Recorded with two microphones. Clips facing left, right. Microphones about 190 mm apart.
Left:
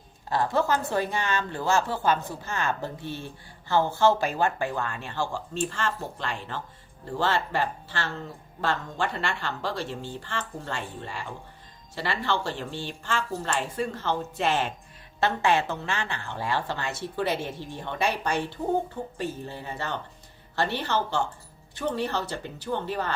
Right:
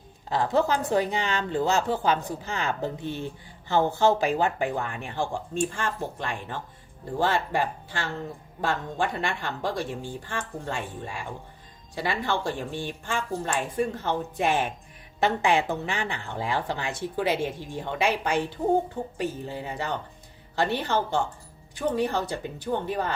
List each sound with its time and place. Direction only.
0.3 s speech: 20° right (ahead or behind)